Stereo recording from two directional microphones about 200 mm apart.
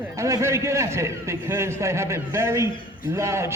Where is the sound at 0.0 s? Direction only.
15° right (ahead or behind).